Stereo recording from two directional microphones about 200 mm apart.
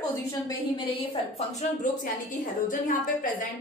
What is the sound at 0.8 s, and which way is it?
Speech, 25° left (ahead or behind).